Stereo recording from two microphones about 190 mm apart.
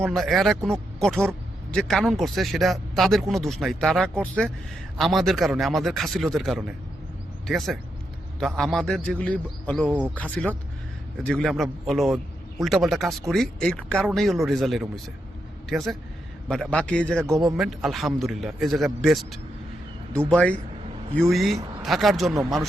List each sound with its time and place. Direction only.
0.1 s a man's voice: centre (ahead or behind)
9.8 s speech: 5° right (ahead or behind)
10.2 s a man's voice: 5° left (ahead or behind)
17.2 s speech: 15° right (ahead or behind)
17.6 s a man's voice: centre (ahead or behind)